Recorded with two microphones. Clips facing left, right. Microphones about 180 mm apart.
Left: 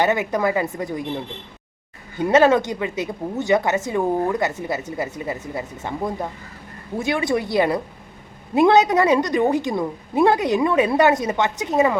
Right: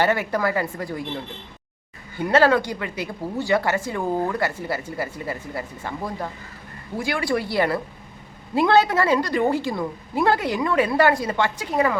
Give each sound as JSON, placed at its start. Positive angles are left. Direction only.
{"t": 0.0, "sound": "a woman's voice", "side_deg": 20}
{"t": 2.1, "sound": "a woman's voice", "side_deg": 20}